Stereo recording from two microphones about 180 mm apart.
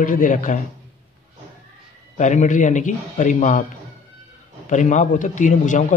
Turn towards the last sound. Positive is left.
turn(degrees=45)  # may be behind; listen again after turning